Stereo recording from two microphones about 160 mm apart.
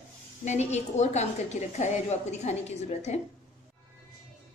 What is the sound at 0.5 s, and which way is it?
A woman's voice, 45° left (ahead or behind).